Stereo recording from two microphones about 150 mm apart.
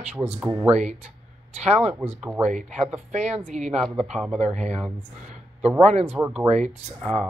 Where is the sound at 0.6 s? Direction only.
45° right (ahead or behind).